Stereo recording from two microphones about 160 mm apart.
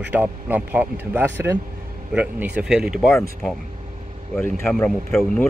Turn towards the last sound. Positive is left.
turn(degrees=10)  # may be behind; listen again after turning